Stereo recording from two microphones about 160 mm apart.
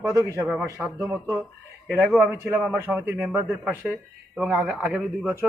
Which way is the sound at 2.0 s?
5° left (ahead or behind).